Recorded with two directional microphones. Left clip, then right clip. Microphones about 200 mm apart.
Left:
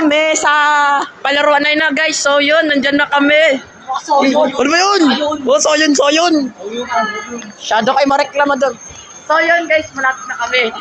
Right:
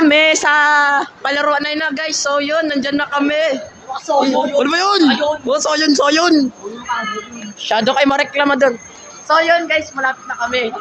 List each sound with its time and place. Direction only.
0.2 s a man's voice: 20° right (ahead or behind)
7.7 s a man's voice: 20° right (ahead or behind)